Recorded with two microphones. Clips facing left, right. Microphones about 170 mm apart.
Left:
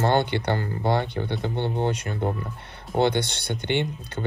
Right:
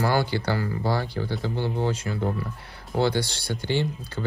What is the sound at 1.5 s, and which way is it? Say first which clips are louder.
Speech: left 1 dB; 25° left (ahead or behind).